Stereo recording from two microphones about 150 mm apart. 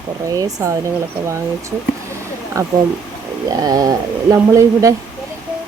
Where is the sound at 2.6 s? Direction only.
20° right (ahead or behind).